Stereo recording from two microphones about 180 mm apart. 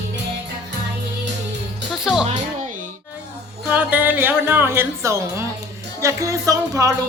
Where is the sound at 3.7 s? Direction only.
10° right (ahead or behind).